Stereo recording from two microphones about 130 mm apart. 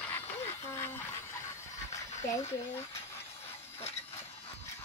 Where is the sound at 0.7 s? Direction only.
20° left (ahead or behind).